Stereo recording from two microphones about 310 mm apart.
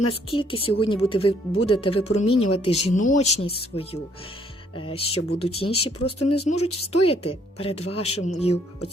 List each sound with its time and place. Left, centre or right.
0.3 s speech: centre
2.0 s speech: left
2.5 s speech: centre